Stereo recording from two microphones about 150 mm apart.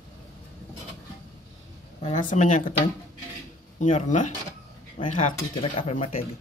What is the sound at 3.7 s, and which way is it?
Speech, 55° left (ahead or behind).